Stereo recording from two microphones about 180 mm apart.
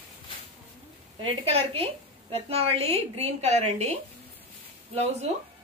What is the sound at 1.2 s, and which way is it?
A woman's voice, 35° right (ahead or behind).